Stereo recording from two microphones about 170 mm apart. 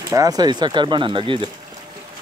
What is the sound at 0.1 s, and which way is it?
Speech, 20° right (ahead or behind).